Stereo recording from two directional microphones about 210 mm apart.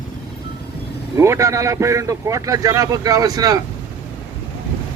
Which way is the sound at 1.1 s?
15° right (ahead or behind).